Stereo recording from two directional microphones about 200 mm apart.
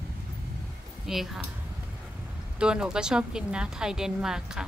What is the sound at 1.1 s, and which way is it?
Speech, centre (ahead or behind).